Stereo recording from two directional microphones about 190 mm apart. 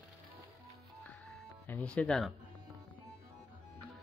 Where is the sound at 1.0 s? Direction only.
5° left (ahead or behind).